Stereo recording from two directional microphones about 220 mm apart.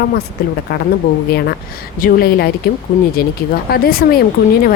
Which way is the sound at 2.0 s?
45° left (ahead or behind).